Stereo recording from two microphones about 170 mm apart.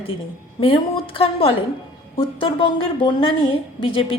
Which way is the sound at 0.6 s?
35° left (ahead or behind).